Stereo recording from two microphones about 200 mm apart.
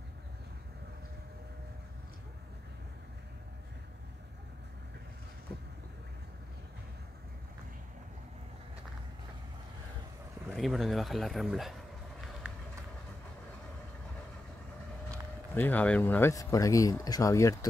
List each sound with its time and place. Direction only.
10.5 s speech: centre (ahead or behind)
15.0 s speech: 10° left (ahead or behind)